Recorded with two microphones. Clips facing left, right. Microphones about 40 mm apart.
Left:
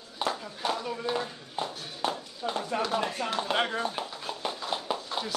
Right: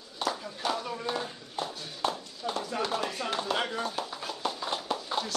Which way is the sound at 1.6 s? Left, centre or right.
Left.